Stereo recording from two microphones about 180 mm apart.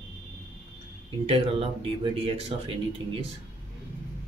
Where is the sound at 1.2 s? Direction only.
30° right (ahead or behind).